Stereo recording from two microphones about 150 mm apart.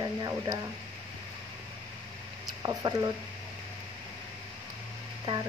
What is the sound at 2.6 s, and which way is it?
Speech, 25° right (ahead or behind).